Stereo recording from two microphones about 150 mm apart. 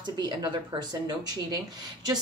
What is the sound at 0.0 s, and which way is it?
A woman's voice, 30° right (ahead or behind).